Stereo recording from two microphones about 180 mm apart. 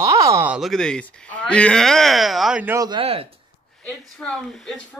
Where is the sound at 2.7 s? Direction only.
20° right (ahead or behind).